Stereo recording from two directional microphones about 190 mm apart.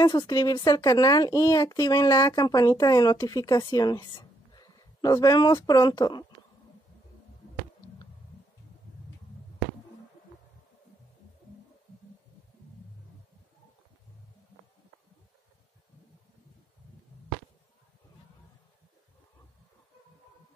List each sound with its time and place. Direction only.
0.0 s speech: 20° left (ahead or behind)